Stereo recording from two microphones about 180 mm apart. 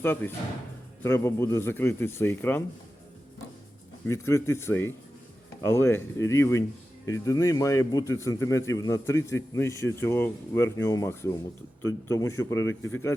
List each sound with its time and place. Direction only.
0.0 s speech: 10° left (ahead or behind)
4.0 s speech: 15° left (ahead or behind)